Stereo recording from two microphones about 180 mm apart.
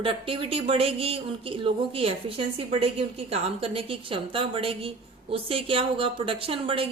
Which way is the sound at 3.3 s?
30° right (ahead or behind).